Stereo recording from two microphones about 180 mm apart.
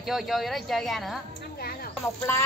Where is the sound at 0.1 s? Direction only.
Centre (ahead or behind).